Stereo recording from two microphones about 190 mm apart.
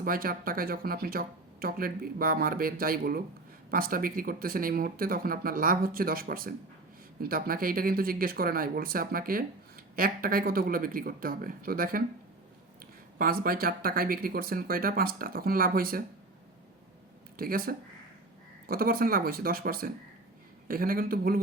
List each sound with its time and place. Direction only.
0.0 s speech: 50° right (ahead or behind)
13.1 s speech: 50° right (ahead or behind)
17.3 s speech: 50° right (ahead or behind)